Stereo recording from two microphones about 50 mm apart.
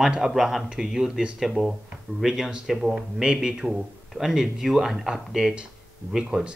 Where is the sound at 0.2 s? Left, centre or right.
Centre.